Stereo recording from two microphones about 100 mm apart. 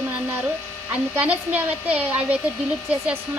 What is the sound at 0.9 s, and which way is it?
A woman's voice, 15° right (ahead or behind).